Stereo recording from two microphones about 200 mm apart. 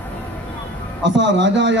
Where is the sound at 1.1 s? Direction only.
65° right (ahead or behind).